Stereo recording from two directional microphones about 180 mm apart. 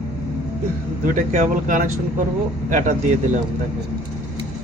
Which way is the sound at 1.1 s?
45° right (ahead or behind).